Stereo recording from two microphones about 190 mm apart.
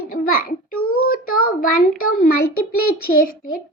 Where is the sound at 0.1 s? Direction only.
50° left (ahead or behind).